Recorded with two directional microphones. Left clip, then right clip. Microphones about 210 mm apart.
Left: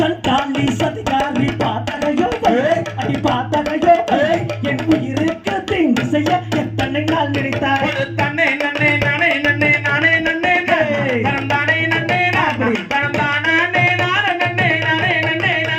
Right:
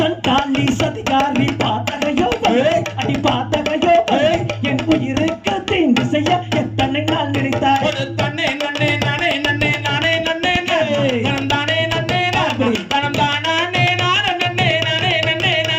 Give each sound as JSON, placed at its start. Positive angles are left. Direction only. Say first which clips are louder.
{"t": 0.0, "sound": "speech", "louder": "even", "side_deg": 5}
{"t": 2.1, "sound": "music", "louder": "even", "side_deg": 0}
{"t": 8.4, "sound": "music", "louder": "left 4 dB", "side_deg": 15}